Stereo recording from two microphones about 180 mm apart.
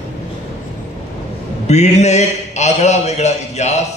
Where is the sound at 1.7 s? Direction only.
40° left (ahead or behind).